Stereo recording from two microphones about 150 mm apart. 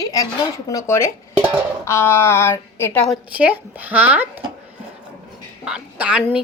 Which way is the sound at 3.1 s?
10° right (ahead or behind).